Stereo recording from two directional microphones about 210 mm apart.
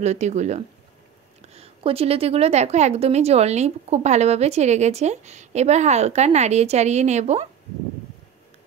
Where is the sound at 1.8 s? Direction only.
25° right (ahead or behind).